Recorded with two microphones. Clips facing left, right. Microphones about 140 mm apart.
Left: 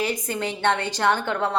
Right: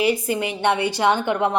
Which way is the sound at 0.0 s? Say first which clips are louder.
Right 5 dB; 10° right (ahead or behind).